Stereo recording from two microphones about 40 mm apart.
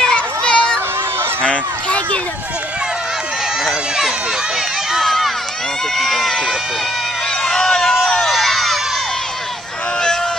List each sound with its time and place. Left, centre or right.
0.1 s children playing: left
1.4 s a sound: left
5.0 s run: centre
5.9 s speech: centre
7.4 s a sound: centre
8.3 s crowd: centre